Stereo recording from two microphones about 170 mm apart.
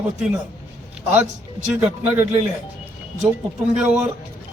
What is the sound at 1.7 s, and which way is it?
Speech, 10° right (ahead or behind).